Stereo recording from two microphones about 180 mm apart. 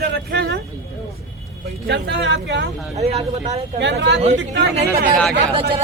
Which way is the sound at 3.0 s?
35° right (ahead or behind).